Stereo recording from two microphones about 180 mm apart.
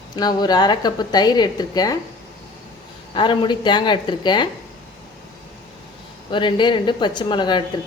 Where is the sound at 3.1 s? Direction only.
25° left (ahead or behind).